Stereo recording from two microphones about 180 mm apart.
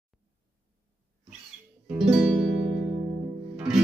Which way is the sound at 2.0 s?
10° right (ahead or behind).